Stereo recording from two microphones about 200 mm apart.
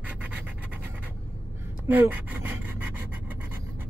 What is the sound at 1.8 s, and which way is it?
Speech, 10° right (ahead or behind).